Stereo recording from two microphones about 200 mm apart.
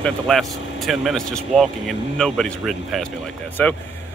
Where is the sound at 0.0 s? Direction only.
Centre (ahead or behind).